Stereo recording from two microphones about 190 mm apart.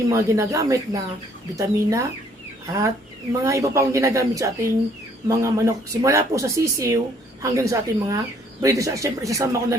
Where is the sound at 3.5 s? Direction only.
15° right (ahead or behind).